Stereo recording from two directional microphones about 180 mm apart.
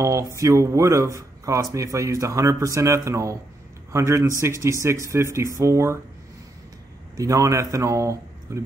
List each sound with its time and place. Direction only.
0.0 s speech: 15° right (ahead or behind)
7.2 s speech: 20° right (ahead or behind)